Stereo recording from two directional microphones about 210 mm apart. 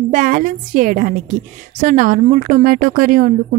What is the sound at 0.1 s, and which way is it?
A woman's voice, 40° right (ahead or behind).